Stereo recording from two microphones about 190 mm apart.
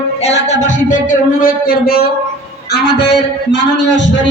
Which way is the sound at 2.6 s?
60° left (ahead or behind).